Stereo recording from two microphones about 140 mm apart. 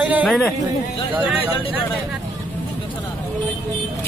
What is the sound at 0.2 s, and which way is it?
Speech, 10° left (ahead or behind).